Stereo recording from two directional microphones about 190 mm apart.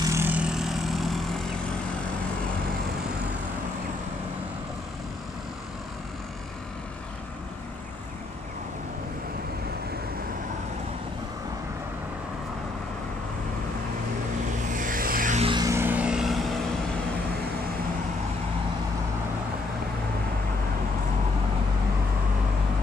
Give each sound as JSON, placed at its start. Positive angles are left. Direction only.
{"t": 0.0, "sound": "vehicle", "side_deg": -15}
{"t": 14.7, "sound": "vehicle", "side_deg": -45}
{"t": 15.4, "sound": "vehicle", "side_deg": -20}